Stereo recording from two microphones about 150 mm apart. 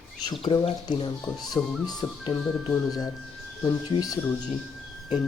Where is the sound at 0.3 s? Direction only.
35° left (ahead or behind).